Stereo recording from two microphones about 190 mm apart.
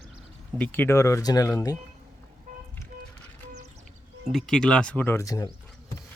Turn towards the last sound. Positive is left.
turn(degrees=20)  # may be behind; listen again after turning